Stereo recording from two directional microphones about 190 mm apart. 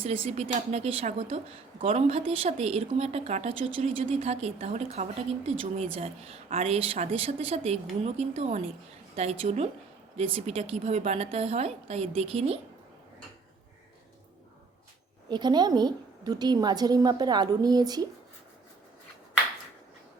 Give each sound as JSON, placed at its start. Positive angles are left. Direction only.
{"t": 0.0, "sound": "speech", "side_deg": -30}
{"t": 15.3, "sound": "a woman's voice", "side_deg": -20}